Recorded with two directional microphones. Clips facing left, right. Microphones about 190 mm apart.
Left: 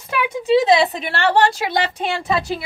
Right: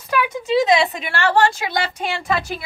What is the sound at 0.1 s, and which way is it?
A woman's voice, 30° left (ahead or behind).